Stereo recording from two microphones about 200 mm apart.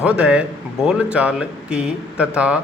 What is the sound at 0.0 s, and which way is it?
Speech, 5° right (ahead or behind).